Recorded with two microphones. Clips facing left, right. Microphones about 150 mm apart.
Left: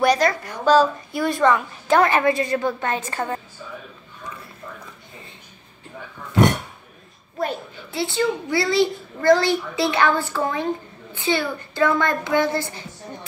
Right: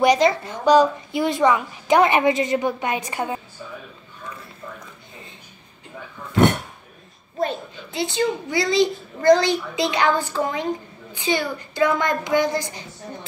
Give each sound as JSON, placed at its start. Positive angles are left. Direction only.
{"t": 0.0, "sound": "a woman's voice", "side_deg": -20}
{"t": 7.3, "sound": "a child's voice", "side_deg": -20}